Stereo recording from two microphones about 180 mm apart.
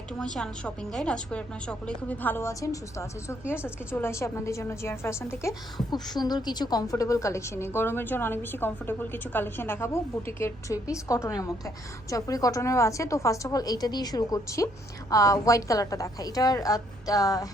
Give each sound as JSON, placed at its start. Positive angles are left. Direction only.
{"t": 0.3, "sound": "a woman's voice", "side_deg": 5}